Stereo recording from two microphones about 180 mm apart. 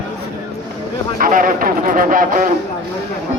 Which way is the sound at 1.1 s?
50° right (ahead or behind).